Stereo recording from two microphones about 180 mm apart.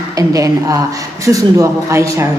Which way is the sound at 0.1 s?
20° right (ahead or behind).